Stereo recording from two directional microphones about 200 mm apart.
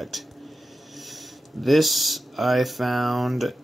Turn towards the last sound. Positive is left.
turn(degrees=0)  # may be behind; listen again after turning